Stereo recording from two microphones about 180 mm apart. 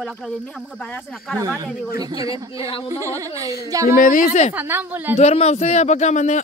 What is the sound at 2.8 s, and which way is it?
Speech, 15° right (ahead or behind).